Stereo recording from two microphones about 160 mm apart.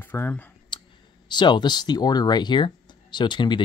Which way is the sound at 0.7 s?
30° left (ahead or behind).